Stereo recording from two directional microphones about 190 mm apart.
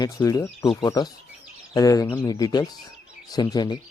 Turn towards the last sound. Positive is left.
turn(degrees=20)  # may be behind; listen again after turning